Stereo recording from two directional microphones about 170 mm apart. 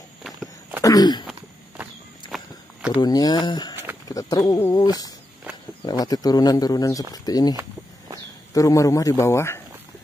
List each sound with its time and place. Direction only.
0.8 s speech: 20° left (ahead or behind)
2.3 s walk: centre (ahead or behind)
2.9 s speech: 25° left (ahead or behind)
8.5 s speech: 20° left (ahead or behind)